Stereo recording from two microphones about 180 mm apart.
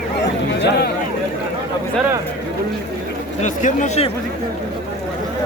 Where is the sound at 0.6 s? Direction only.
65° left (ahead or behind).